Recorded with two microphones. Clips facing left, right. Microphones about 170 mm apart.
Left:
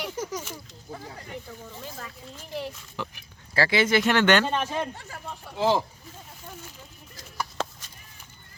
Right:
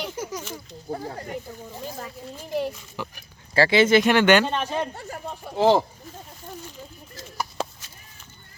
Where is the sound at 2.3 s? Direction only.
15° right (ahead or behind).